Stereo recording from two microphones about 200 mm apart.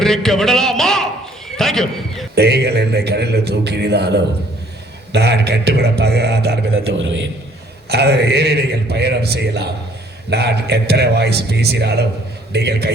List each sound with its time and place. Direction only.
0.0 s a sound: centre (ahead or behind)
2.3 s a man's voice: 55° right (ahead or behind)
6.8 s a man's voice: 70° right (ahead or behind)
7.9 s a man's voice: 55° right (ahead or behind)